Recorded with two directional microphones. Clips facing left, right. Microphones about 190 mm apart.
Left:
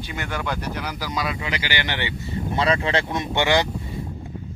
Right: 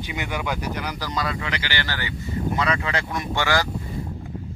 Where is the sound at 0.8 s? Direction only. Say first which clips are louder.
Even; 5° left (ahead or behind).